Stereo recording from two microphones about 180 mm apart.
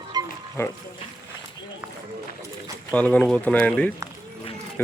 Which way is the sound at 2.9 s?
5° left (ahead or behind).